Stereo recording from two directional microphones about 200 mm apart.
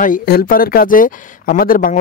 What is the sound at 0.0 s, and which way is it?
Speech, 45° left (ahead or behind).